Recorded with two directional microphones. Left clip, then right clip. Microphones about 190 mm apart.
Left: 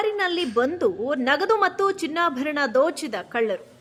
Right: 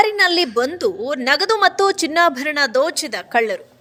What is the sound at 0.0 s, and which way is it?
A woman's voice, 30° right (ahead or behind).